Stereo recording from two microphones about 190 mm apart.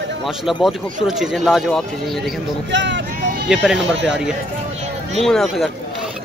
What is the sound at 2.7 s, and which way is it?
Vehicle, 70° right (ahead or behind).